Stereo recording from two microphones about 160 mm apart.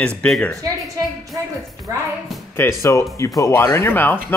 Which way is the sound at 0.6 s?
20° right (ahead or behind).